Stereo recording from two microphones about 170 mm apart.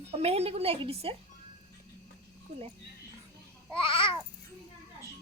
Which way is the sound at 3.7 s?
30° left (ahead or behind).